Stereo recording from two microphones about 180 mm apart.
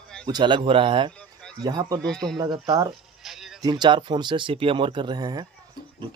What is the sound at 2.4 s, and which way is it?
Speech, 20° right (ahead or behind).